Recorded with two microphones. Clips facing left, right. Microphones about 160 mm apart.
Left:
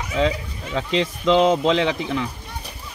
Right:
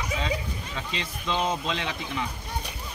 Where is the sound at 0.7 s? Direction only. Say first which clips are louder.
Left 15 dB; 90° left.